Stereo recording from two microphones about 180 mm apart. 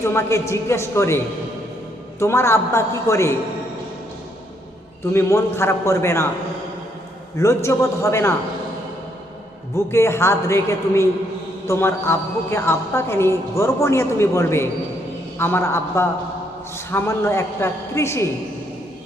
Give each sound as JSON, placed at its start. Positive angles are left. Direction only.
{"t": 0.0, "sound": "a woman's voice", "side_deg": 15}
{"t": 5.1, "sound": "a woman's voice", "side_deg": 15}
{"t": 7.3, "sound": "a woman's voice", "side_deg": 15}
{"t": 9.7, "sound": "a woman's voice", "side_deg": 15}